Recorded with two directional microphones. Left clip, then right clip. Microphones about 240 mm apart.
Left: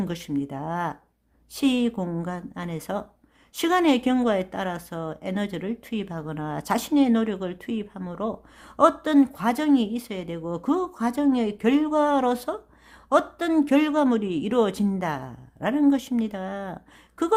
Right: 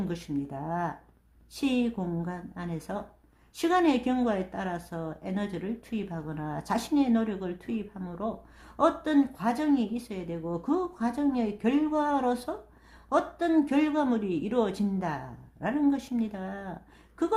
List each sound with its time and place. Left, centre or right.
0.0 s speech: left